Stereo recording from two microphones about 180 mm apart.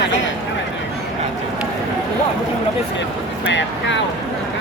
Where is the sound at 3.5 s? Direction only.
85° left.